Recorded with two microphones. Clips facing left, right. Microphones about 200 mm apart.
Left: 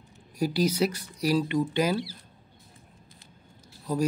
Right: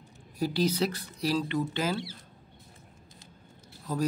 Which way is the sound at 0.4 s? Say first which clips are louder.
Left 2 dB; 10° left (ahead or behind).